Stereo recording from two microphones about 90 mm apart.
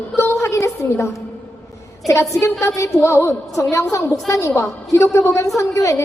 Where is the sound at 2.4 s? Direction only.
35° left (ahead or behind).